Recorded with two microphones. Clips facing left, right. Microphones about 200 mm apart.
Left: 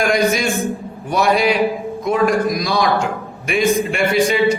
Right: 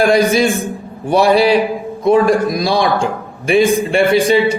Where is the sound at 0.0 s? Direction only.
30° right (ahead or behind).